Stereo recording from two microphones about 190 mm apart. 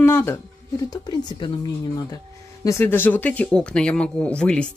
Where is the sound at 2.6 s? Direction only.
15° left (ahead or behind).